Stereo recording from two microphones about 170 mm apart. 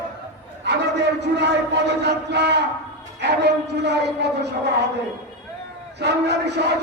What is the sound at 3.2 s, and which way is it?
Battle cry, 85° right.